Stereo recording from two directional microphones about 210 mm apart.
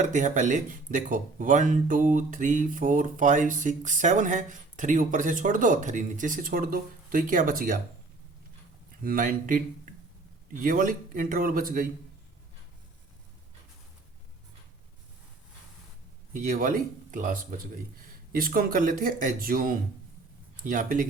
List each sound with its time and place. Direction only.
0.0 s speech: 35° right (ahead or behind)
9.0 s speech: 40° right (ahead or behind)
16.3 s speech: 40° right (ahead or behind)